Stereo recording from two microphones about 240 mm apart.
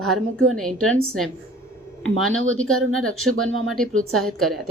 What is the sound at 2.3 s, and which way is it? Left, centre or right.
Speech, right.